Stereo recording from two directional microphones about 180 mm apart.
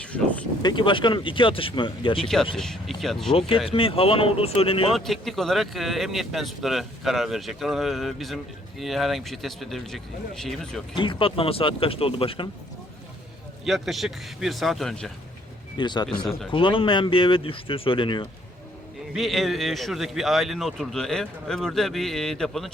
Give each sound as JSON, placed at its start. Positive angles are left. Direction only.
{"t": 0.0, "sound": "a sound", "side_deg": 5}
{"t": 0.6, "sound": "speech", "side_deg": 25}
{"t": 2.1, "sound": "a man's voice", "side_deg": 0}
{"t": 3.3, "sound": "speech", "side_deg": 30}
{"t": 4.9, "sound": "a man's voice", "side_deg": 0}
{"t": 10.9, "sound": "speech", "side_deg": 25}
{"t": 13.7, "sound": "a man's voice", "side_deg": 0}
{"t": 15.8, "sound": "speech", "side_deg": 25}
{"t": 16.0, "sound": "a man's voice", "side_deg": 0}
{"t": 16.5, "sound": "speech", "side_deg": 30}
{"t": 19.1, "sound": "a man's voice", "side_deg": 0}